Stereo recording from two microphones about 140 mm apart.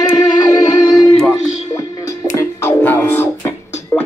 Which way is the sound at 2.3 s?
15° left (ahead or behind).